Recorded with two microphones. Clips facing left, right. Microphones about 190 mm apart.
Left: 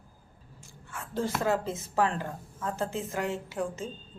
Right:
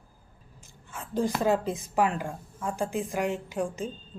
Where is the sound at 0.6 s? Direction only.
20° right (ahead or behind).